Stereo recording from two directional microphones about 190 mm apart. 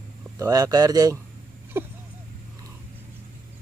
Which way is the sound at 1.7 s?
10° right (ahead or behind).